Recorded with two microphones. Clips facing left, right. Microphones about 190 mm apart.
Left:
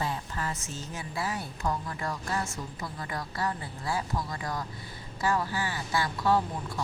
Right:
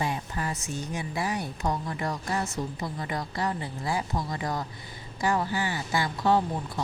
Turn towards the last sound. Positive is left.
turn(degrees=-20)  # may be behind; listen again after turning